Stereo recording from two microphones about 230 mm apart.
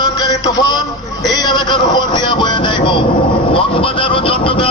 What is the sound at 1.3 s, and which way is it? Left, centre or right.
Speech, centre.